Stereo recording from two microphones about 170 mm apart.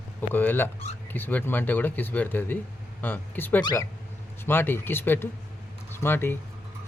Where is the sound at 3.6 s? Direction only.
20° left (ahead or behind).